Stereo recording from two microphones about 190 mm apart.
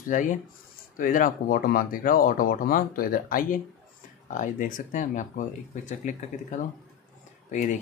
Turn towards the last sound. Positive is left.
turn(degrees=40)  # may be behind; listen again after turning